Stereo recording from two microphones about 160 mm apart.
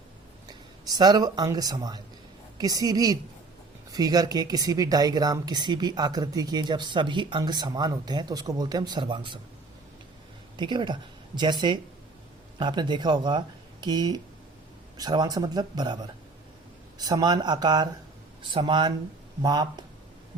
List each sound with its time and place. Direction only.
0.4 s speech: 25° right (ahead or behind)
10.6 s speech: 30° right (ahead or behind)